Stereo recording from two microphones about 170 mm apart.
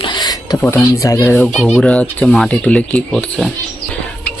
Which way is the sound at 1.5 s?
Centre (ahead or behind).